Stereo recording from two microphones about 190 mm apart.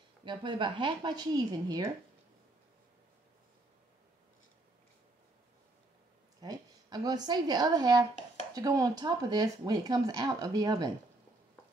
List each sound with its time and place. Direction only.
0.2 s speech: 25° right (ahead or behind)
6.4 s a woman's voice: 20° right (ahead or behind)